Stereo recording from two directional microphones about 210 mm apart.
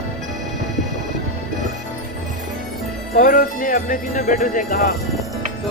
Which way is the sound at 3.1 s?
40° left (ahead or behind).